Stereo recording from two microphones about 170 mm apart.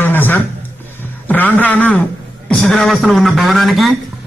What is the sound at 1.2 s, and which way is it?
A man's voice, 10° left (ahead or behind).